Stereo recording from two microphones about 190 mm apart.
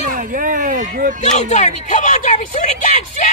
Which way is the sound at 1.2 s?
40° left (ahead or behind).